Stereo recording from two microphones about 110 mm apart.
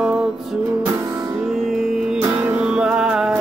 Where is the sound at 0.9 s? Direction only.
30° right (ahead or behind).